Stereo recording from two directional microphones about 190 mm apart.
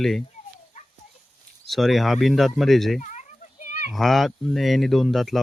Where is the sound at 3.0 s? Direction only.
40° left (ahead or behind).